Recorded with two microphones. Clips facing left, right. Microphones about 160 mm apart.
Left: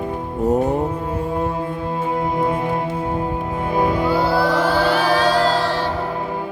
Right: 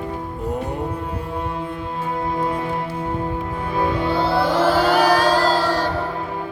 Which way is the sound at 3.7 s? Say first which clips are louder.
Left 3 dB; 20° left (ahead or behind).